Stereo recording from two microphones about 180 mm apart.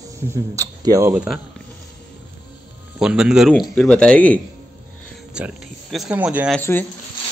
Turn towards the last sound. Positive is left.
turn(degrees=10)  # may be behind; listen again after turning